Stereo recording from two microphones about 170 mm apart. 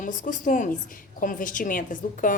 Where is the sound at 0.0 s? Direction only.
50° left (ahead or behind).